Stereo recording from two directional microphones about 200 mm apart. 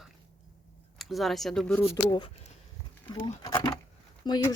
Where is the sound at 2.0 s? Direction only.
20° left (ahead or behind).